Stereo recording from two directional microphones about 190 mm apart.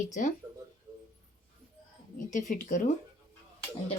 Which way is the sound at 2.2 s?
40° left (ahead or behind).